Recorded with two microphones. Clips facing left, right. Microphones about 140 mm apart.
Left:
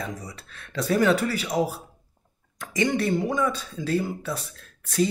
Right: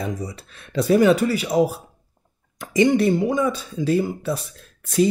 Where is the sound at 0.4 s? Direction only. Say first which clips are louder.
Right 5 dB; 15° right (ahead or behind).